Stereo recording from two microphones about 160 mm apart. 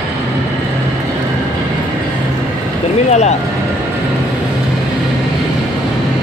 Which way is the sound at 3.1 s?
45° left (ahead or behind).